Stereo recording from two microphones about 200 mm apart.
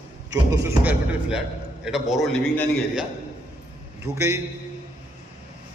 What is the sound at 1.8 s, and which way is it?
A man's voice, centre (ahead or behind).